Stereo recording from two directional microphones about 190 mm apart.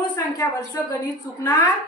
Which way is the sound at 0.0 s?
20° left (ahead or behind).